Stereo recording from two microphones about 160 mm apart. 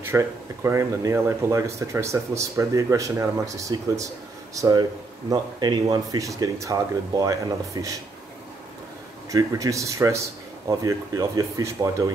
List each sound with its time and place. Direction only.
0.0 s speech: 15° right (ahead or behind)
9.3 s speech: 20° right (ahead or behind)